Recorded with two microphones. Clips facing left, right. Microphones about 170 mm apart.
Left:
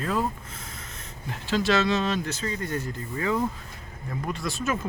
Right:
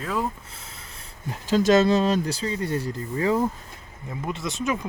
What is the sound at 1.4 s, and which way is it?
Speech, 40° right (ahead or behind).